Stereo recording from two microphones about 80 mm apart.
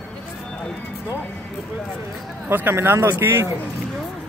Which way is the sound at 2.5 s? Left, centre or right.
Right.